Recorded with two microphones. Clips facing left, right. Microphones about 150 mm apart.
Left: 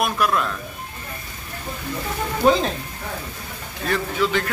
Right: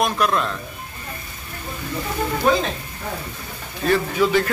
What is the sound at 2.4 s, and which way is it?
Speech, 30° left (ahead or behind).